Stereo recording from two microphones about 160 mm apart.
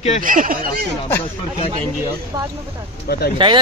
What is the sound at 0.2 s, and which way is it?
Speech, 60° right (ahead or behind).